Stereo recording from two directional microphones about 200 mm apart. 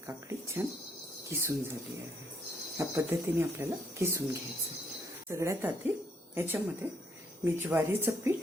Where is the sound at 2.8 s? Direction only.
15° right (ahead or behind).